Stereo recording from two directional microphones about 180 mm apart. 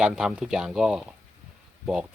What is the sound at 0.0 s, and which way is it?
Speech, 5° right (ahead or behind).